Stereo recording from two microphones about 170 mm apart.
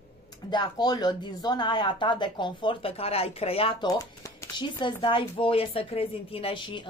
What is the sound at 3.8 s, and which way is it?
A woman's voice, 20° left (ahead or behind).